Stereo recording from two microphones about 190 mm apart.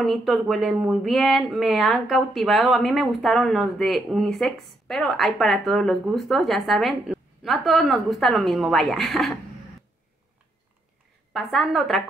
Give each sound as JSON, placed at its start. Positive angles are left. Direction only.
{"t": 0.0, "sound": "speech", "side_deg": 0}
{"t": 11.3, "sound": "speech", "side_deg": 0}